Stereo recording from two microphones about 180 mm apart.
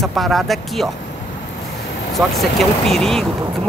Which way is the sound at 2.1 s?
Centre (ahead or behind).